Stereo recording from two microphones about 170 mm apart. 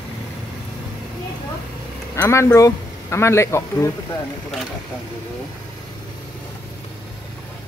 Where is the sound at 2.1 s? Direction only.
15° left (ahead or behind).